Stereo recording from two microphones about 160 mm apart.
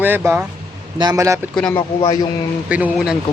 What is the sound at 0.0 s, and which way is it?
Speech, 10° right (ahead or behind).